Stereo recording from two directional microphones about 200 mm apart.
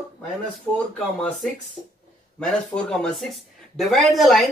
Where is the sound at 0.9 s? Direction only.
5° left (ahead or behind).